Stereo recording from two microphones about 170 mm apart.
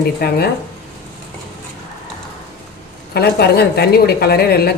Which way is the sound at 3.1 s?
70° left (ahead or behind).